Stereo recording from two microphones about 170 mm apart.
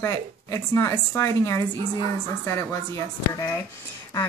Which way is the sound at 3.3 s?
20° left (ahead or behind).